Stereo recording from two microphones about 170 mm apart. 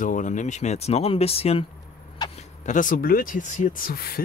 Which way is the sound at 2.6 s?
50° left (ahead or behind).